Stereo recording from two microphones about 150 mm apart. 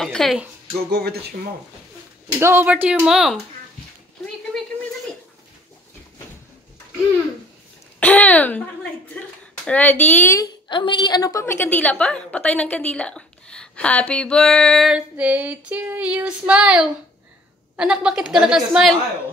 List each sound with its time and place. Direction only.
0.0 s a woman's voice: centre (ahead or behind)
0.8 s a sound: 90° right
2.3 s speech: 15° right (ahead or behind)
4.5 s a sound: 5° left (ahead or behind)
8.0 s speech: 10° left (ahead or behind)
9.7 s a woman's voice: 10° left (ahead or behind)
10.7 s a woman's voice: 30° left (ahead or behind); by 18.9 s 5° right (ahead or behind)